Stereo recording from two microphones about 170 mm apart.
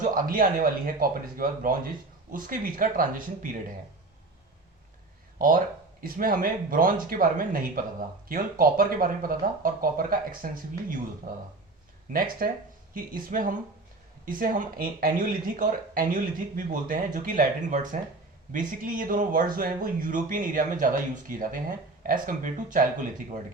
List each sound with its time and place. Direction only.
0.0 s speech: 55° right (ahead or behind)
5.4 s speech: 55° right (ahead or behind)
12.1 s speech: 60° right (ahead or behind)